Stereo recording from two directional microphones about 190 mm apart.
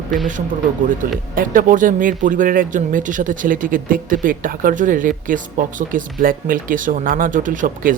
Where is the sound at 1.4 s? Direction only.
45° right (ahead or behind).